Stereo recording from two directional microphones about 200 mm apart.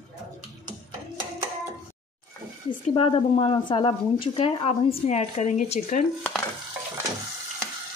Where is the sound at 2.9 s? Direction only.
25° left (ahead or behind).